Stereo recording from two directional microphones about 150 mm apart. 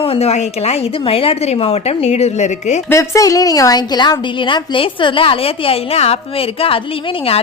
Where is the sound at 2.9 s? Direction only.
20° left (ahead or behind); by 6.8 s 40° left (ahead or behind).